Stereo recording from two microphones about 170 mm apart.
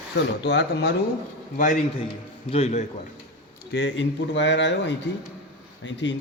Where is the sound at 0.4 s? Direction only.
85° left.